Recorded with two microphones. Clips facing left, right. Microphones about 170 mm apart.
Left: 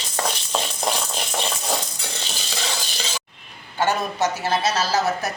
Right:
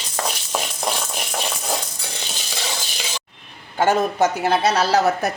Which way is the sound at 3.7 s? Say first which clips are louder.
Right 5 dB; 50° right (ahead or behind).